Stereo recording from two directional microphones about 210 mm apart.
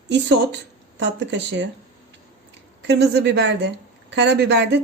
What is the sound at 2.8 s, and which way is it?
A woman's voice, 55° right (ahead or behind).